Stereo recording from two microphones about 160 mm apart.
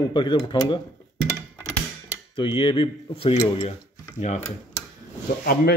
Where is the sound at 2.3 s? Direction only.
35° left (ahead or behind).